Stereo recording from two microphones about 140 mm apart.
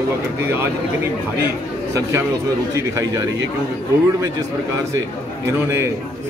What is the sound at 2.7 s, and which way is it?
Speech, 25° right (ahead or behind).